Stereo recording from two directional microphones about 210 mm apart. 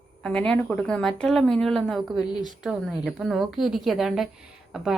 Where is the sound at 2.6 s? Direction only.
Centre (ahead or behind).